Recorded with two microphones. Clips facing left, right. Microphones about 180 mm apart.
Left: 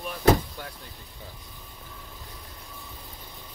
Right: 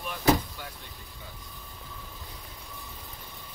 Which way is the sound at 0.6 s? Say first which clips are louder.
Left 3 dB; 45° left (ahead or behind).